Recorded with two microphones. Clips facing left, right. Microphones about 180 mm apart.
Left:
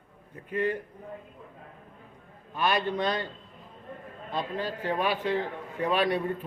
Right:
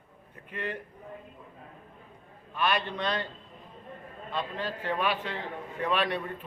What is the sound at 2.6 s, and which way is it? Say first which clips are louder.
Speech: left 2 dB; 40° left (ahead or behind).